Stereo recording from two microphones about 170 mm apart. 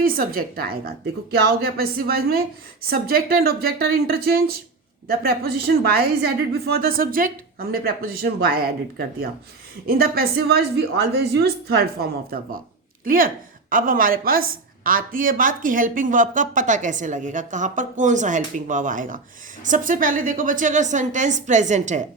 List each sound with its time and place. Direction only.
0.0 s a woman's voice: 60° right (ahead or behind)